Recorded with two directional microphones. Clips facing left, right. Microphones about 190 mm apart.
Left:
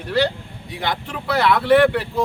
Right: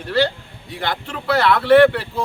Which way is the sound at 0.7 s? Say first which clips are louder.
Even; 15° left (ahead or behind).